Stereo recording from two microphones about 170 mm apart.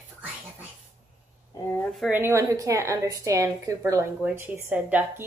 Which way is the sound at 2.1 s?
15° right (ahead or behind).